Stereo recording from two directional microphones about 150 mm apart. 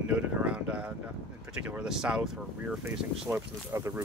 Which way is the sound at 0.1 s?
10° right (ahead or behind).